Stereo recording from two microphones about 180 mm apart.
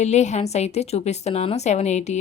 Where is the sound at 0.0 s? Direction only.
40° left (ahead or behind).